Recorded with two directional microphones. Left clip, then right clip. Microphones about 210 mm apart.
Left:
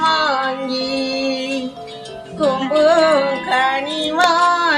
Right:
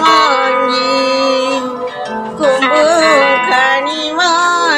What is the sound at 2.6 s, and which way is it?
Music, 45° right (ahead or behind).